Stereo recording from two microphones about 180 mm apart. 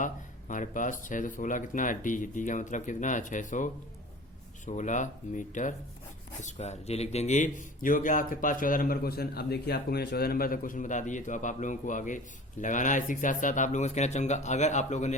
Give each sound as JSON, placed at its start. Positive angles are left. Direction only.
{"t": 0.0, "sound": "speech", "side_deg": 45}